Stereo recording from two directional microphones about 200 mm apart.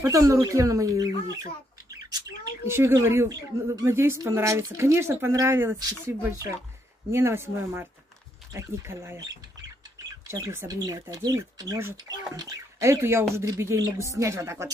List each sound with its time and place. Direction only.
0.0 s speech: 15° right (ahead or behind)
10.6 s speech: 20° right (ahead or behind)